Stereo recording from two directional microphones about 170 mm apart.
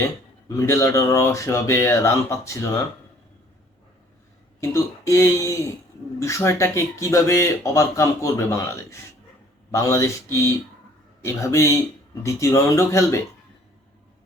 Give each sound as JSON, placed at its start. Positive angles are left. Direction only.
{"t": 0.4, "sound": "speech", "side_deg": 15}
{"t": 4.6, "sound": "speech", "side_deg": 15}